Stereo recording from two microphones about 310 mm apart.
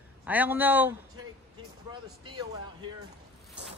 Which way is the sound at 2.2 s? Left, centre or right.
Centre.